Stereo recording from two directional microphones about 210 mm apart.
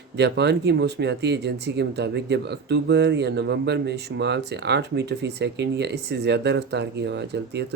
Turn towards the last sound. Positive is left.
turn(degrees=-55)  # may be behind; listen again after turning